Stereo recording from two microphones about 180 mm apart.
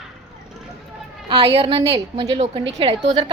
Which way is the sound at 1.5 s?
35° right (ahead or behind).